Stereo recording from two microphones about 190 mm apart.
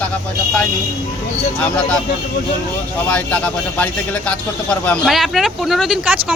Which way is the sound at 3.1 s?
5° left (ahead or behind).